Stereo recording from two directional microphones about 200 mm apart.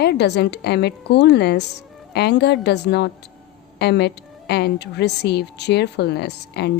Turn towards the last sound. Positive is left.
turn(degrees=55)  # may be behind; listen again after turning